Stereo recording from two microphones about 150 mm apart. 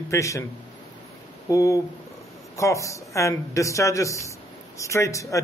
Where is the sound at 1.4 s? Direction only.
20° left (ahead or behind).